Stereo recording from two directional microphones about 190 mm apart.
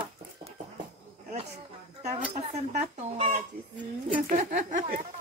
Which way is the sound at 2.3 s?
35° right (ahead or behind).